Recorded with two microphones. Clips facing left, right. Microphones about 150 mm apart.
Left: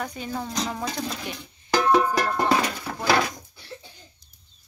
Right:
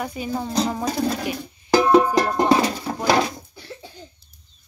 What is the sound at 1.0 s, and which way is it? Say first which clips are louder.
Speech: right 9 dB; 55° right (ahead or behind).